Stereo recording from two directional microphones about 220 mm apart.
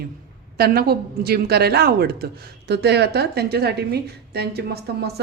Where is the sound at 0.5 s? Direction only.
45° right (ahead or behind).